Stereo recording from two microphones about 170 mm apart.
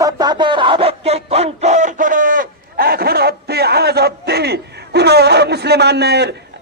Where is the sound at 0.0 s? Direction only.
25° right (ahead or behind).